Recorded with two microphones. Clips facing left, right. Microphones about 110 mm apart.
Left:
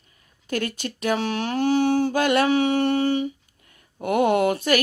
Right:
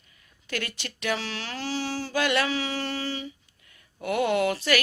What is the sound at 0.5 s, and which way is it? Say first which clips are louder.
Speech: left 7 dB; 45° left (ahead or behind).